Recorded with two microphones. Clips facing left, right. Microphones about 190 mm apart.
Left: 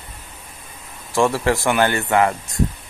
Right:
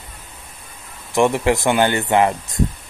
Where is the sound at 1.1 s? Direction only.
20° right (ahead or behind).